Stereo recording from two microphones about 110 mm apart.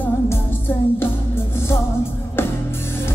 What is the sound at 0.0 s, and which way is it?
Music, 20° left (ahead or behind).